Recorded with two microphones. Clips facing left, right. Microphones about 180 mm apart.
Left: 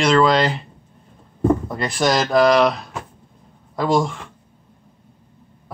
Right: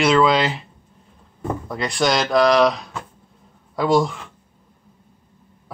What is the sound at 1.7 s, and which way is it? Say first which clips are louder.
Speech: left 1 dB; centre (ahead or behind).